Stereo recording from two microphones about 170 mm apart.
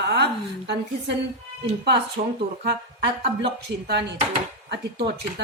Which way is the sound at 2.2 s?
50° right (ahead or behind).